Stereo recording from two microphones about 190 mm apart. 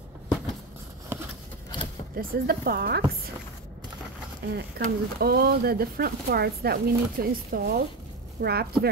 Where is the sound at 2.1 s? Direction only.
50° right (ahead or behind).